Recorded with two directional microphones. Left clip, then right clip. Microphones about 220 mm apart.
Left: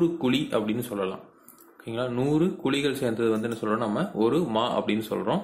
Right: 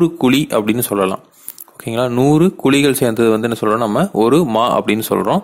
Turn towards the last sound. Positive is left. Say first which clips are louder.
# right 12 dB
turn(degrees=-50)  # may be behind; listen again after turning